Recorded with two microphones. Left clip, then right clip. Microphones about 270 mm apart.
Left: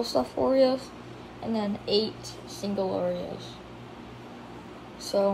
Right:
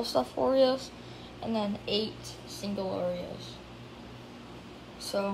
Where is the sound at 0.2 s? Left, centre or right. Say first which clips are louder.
Left 2 dB; right.